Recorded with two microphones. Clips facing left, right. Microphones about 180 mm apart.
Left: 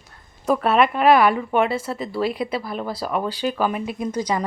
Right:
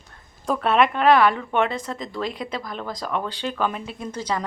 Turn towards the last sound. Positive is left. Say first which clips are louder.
# left 4 dB
turn(degrees=15)  # may be behind; listen again after turning